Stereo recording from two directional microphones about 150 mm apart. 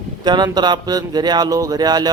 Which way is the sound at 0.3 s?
30° right (ahead or behind).